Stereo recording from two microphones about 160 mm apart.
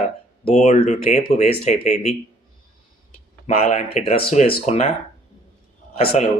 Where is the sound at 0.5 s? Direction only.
45° left (ahead or behind).